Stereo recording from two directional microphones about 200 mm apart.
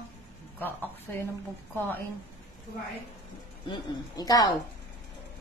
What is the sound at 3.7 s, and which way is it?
Speech, 20° left (ahead or behind).